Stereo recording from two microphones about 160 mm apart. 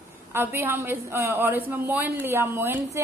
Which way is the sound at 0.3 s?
15° right (ahead or behind).